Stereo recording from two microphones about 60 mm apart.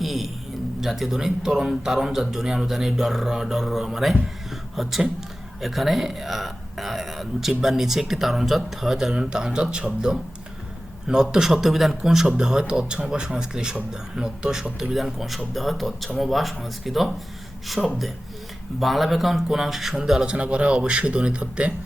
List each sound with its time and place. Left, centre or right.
0.0 s a sound: centre
0.8 s speech: centre
20.3 s speech: centre